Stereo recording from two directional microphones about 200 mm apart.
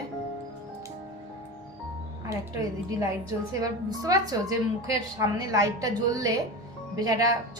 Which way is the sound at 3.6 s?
15° right (ahead or behind).